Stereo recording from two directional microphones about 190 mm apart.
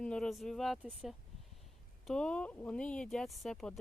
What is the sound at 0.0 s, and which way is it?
Speech, 5° left (ahead or behind).